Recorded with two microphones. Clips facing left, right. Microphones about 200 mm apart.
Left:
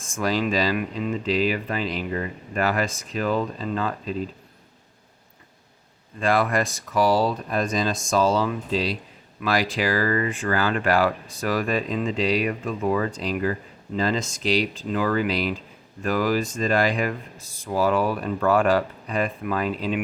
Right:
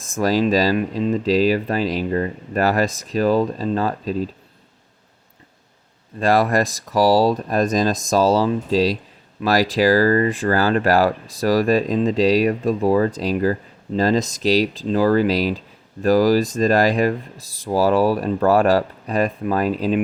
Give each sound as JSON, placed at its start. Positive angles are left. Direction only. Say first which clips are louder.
{"t": 0.0, "sound": "speech", "louder": "right 6 dB", "side_deg": -40}
{"t": 6.1, "sound": "speech", "louder": "right 5 dB", "side_deg": -40}